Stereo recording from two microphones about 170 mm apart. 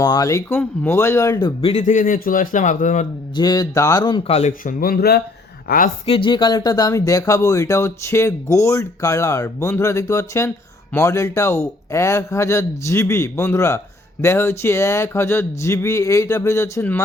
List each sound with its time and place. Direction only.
0.0 s a man's voice: 20° left (ahead or behind)
1.7 s a man's voice: 50° left (ahead or behind)
3.3 s speech: 25° left (ahead or behind)
4.6 s a man's voice: 60° left (ahead or behind)
6.1 s a man's voice: 30° left (ahead or behind); by 17.0 s 15° left (ahead or behind)